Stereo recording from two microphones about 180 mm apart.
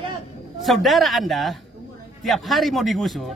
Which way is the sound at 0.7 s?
Centre (ahead or behind).